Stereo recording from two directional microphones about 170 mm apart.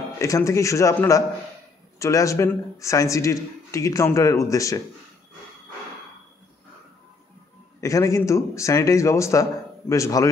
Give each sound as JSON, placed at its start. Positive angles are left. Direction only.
{"t": 0.2, "sound": "a man's voice", "side_deg": 20}
{"t": 7.8, "sound": "a man's voice", "side_deg": 20}